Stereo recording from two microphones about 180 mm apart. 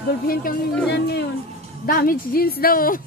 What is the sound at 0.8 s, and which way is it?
Speech, 70° left (ahead or behind).